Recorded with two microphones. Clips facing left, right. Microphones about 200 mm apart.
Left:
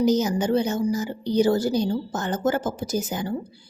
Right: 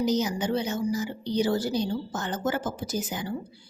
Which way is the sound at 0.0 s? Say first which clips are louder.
Left 5 dB; 45° left (ahead or behind).